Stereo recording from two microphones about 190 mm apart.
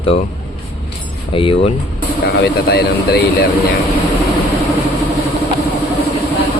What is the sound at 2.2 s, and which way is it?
Speech, 60° left (ahead or behind).